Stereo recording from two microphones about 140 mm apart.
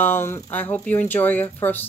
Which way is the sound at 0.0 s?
15° left (ahead or behind).